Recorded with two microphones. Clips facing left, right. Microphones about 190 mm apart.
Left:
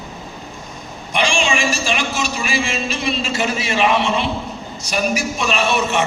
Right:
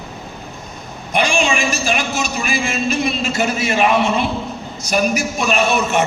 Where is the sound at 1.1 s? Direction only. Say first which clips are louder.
Right 2 dB; 45° right (ahead or behind).